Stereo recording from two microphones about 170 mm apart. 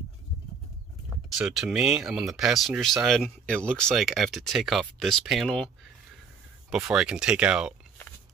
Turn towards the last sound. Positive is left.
turn(degrees=-5)  # may be behind; listen again after turning